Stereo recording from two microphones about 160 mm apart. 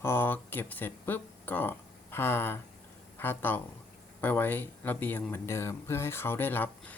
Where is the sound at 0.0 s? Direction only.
15° left (ahead or behind).